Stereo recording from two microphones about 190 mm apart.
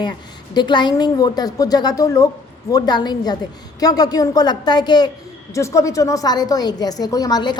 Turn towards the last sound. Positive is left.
turn(degrees=20)  # may be behind; listen again after turning